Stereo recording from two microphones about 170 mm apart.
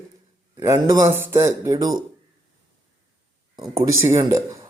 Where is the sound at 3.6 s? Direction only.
20° right (ahead or behind).